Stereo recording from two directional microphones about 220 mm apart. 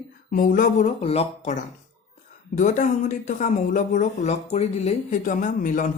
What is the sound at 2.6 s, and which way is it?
Speech, 35° left (ahead or behind).